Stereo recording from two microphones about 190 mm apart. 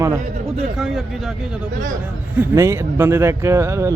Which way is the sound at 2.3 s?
15° right (ahead or behind).